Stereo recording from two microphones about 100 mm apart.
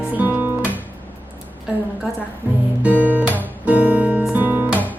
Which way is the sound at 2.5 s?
20° right (ahead or behind).